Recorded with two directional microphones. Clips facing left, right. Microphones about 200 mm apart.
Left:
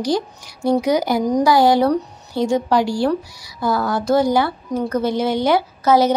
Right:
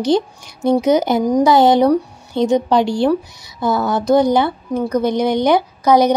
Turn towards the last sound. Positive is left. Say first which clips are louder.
# right 2 dB
turn(degrees=-15)  # may be behind; listen again after turning